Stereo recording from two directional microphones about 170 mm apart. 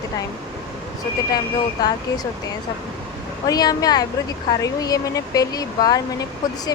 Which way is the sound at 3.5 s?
20° left (ahead or behind).